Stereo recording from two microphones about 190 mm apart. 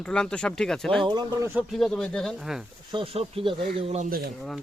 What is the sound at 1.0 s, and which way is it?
Speech, 25° right (ahead or behind).